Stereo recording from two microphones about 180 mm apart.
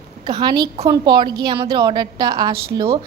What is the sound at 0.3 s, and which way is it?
A woman's voice, 25° right (ahead or behind).